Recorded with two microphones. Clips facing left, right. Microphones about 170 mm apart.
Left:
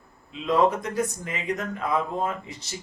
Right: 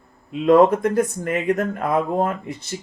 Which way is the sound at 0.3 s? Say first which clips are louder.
Right 8 dB; 55° right (ahead or behind).